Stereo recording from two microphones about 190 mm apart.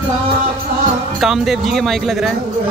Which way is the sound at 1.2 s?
Centre (ahead or behind).